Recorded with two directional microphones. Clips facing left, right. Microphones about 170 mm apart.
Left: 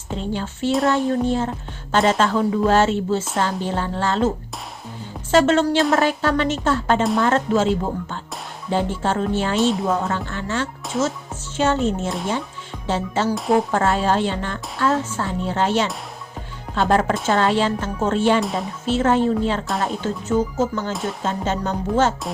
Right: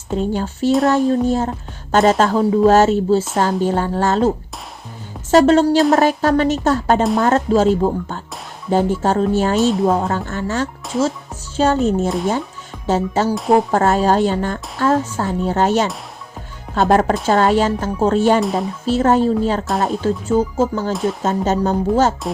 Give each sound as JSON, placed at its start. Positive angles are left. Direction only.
{"t": 0.2, "sound": "speech", "side_deg": -40}
{"t": 5.3, "sound": "speech", "side_deg": -35}
{"t": 9.6, "sound": "speech", "side_deg": 0}
{"t": 9.8, "sound": "speech", "side_deg": -35}
{"t": 12.0, "sound": "speech", "side_deg": 0}
{"t": 13.2, "sound": "speech", "side_deg": -40}
{"t": 18.3, "sound": "speech", "side_deg": 0}
{"t": 18.9, "sound": "speech", "side_deg": -40}
{"t": 20.9, "sound": "speech", "side_deg": 0}
{"t": 21.2, "sound": "speech", "side_deg": -40}